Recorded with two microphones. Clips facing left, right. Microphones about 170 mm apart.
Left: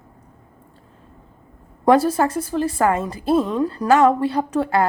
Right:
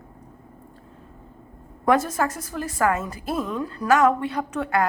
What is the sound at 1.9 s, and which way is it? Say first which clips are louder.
A woman's voice: left 5 dB; 30° left (ahead or behind).